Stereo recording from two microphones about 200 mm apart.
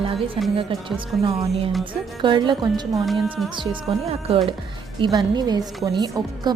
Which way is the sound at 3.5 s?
25° right (ahead or behind).